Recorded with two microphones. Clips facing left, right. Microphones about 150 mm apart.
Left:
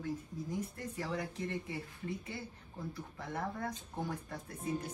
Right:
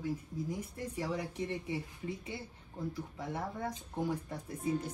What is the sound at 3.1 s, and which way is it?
Speech, 20° right (ahead or behind).